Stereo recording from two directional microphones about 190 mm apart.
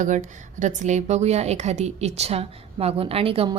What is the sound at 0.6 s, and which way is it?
A woman's voice, 40° right (ahead or behind).